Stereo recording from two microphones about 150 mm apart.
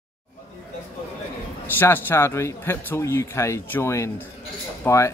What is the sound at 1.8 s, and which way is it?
A man's voice, 15° left (ahead or behind).